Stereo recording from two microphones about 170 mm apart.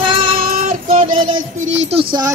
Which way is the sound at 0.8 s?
45° right (ahead or behind).